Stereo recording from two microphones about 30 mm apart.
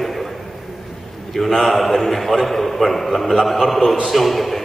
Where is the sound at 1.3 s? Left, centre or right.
Centre.